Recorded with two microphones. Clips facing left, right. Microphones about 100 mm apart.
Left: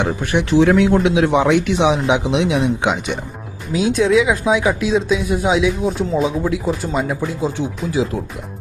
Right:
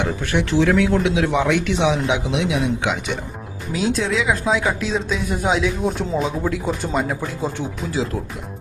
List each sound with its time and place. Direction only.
0.0 s speech: 20° left (ahead or behind); by 7.5 s centre (ahead or behind)